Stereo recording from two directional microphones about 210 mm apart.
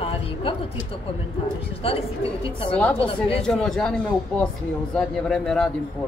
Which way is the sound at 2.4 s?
25° left (ahead or behind).